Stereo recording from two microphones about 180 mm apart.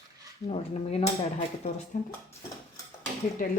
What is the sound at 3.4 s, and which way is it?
Speech, 50° left (ahead or behind).